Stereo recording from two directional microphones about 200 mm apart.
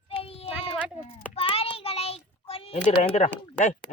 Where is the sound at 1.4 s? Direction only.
25° left (ahead or behind).